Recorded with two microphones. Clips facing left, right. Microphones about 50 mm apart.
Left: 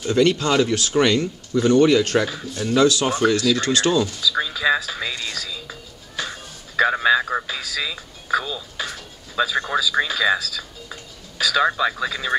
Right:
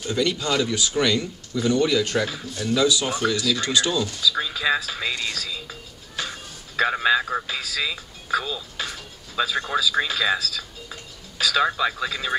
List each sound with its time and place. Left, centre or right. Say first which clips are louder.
0.1 s speech: left 6 dB; left
0.5 s speech: left 5 dB; left
0.9 s speech: left 5 dB; left
2.2 s a man's voice: left 2 dB; centre
2.8 s speech: left 5 dB; left
4.0 s a sound: left 2 dB; centre